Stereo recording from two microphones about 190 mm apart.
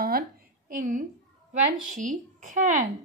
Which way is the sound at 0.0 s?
50° right (ahead or behind).